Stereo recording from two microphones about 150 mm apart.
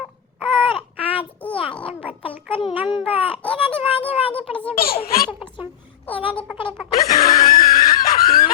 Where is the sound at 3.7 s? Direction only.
10° left (ahead or behind).